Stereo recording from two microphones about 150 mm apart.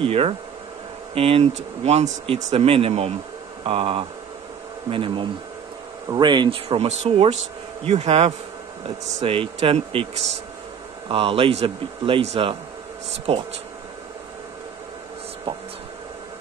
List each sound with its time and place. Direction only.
0.0 s speech: 40° right (ahead or behind)
11.1 s speech: 40° right (ahead or behind)